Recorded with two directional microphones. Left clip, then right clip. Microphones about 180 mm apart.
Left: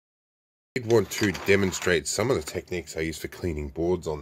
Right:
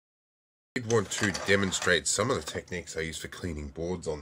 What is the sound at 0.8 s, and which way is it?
Speech, 35° left (ahead or behind).